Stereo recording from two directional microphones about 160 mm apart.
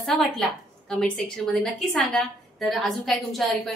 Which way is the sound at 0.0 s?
Centre (ahead or behind).